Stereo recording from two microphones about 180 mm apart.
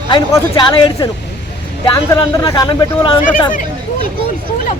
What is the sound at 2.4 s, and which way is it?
Speech, 25° left (ahead or behind).